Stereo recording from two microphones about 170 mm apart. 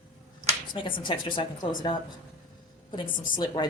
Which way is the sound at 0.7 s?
30° left (ahead or behind).